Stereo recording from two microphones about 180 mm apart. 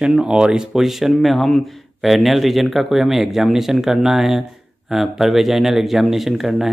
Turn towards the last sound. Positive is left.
turn(degrees=0)  # may be behind; listen again after turning